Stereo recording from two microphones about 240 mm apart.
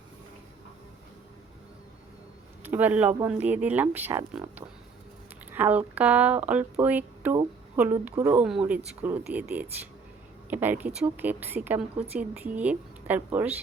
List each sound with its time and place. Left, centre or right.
2.6 s a woman's voice: centre